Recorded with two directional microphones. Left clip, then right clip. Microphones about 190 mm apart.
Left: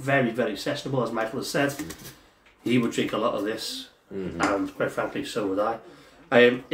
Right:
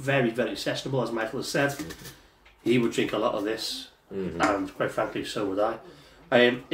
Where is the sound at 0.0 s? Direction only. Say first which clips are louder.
Left 2 dB; 20° left (ahead or behind).